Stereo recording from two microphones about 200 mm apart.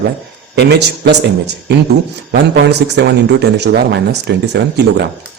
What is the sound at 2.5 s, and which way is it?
Speech, 60° right (ahead or behind).